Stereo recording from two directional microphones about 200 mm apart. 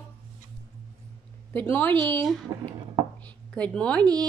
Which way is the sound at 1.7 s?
10° left (ahead or behind).